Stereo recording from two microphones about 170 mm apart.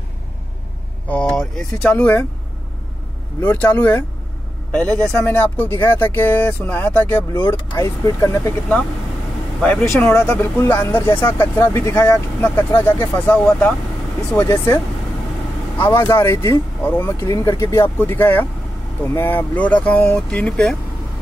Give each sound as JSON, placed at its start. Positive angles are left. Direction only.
{"t": 1.0, "sound": "speech", "side_deg": 5}
{"t": 3.3, "sound": "speech", "side_deg": 10}
{"t": 9.6, "sound": "speech", "side_deg": 5}
{"t": 15.8, "sound": "speech", "side_deg": 15}